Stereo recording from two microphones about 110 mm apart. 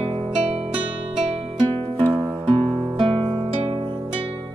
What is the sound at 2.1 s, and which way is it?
Music, 45° right (ahead or behind).